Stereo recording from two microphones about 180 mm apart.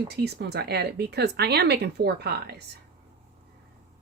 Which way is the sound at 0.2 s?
65° right (ahead or behind).